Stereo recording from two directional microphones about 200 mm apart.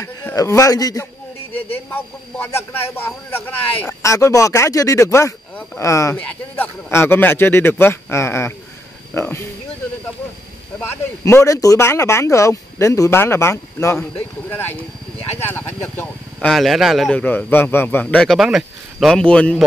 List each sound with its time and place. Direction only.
0.0 s a man's voice: 15° left (ahead or behind)
10.8 s speech: 10° left (ahead or behind)